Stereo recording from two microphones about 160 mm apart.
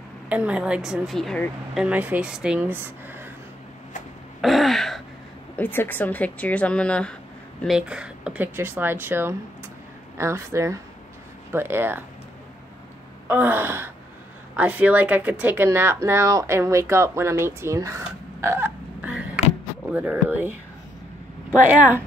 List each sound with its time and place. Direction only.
0.3 s speech: 5° right (ahead or behind)
1.9 s speech: 10° right (ahead or behind)
4.4 s throat clearing: centre (ahead or behind)
5.6 s a woman's voice: 10° left (ahead or behind)
7.6 s speech: 5° right (ahead or behind)
13.3 s speech: 10° right (ahead or behind)